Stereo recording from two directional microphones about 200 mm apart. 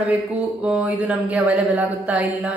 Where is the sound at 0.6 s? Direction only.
5° right (ahead or behind).